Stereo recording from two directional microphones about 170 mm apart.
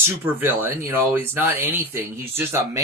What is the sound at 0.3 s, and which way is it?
Speech, 10° right (ahead or behind).